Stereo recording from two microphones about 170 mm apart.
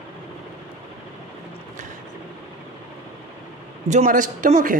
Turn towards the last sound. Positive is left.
turn(degrees=-50)  # may be behind; listen again after turning